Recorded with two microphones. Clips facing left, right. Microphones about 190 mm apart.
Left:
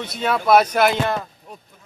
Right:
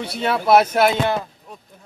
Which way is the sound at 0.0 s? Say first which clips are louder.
Even; 5° right (ahead or behind).